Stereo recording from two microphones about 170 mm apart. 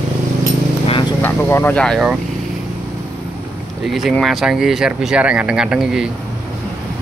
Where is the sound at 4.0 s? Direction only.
Centre (ahead or behind).